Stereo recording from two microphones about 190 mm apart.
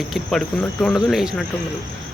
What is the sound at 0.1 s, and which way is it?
Speech, centre (ahead or behind).